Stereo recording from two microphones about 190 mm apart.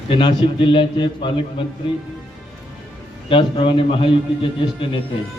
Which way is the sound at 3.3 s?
30° left (ahead or behind).